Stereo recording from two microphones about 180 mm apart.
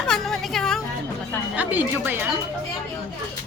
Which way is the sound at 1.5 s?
10° right (ahead or behind).